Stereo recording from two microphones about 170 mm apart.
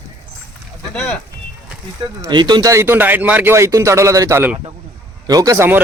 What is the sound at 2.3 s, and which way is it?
Speech, 25° right (ahead or behind).